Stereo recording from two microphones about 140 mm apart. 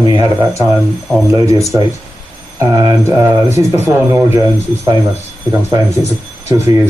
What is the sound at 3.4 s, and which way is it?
Speech, 55° left (ahead or behind).